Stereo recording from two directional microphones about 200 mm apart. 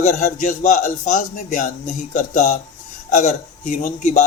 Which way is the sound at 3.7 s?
40° left (ahead or behind).